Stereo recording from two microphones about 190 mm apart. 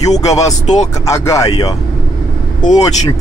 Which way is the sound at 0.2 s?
20° left (ahead or behind).